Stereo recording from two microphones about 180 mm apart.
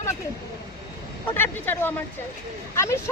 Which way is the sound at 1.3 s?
10° left (ahead or behind).